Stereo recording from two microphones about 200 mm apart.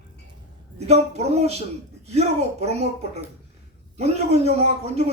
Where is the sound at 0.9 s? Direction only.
35° right (ahead or behind).